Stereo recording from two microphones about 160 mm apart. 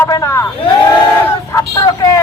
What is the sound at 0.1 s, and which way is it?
Speech, 20° left (ahead or behind).